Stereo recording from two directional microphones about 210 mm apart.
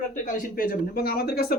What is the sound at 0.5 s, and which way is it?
Speech, 45° left (ahead or behind).